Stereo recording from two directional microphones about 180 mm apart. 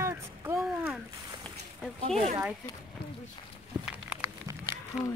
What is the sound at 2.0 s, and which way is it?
Speech, 35° right (ahead or behind).